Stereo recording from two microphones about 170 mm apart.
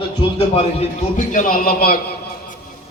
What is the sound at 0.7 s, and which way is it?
A man's voice, 50° left (ahead or behind).